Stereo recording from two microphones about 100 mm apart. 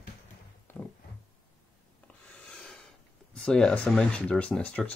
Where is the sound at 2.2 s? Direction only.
10° left (ahead or behind).